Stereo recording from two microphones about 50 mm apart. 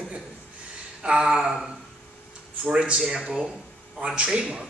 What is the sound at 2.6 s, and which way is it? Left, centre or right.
A man's voice, right.